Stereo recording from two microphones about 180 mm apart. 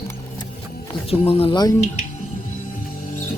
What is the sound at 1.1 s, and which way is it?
Speech, 30° left (ahead or behind).